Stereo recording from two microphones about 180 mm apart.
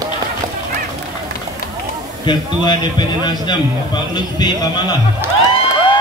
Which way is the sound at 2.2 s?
25° left (ahead or behind).